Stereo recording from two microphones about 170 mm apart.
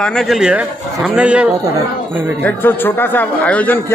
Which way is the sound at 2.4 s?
10° left (ahead or behind).